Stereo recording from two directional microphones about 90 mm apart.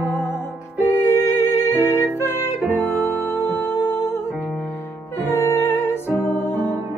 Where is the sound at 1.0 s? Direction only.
25° left (ahead or behind).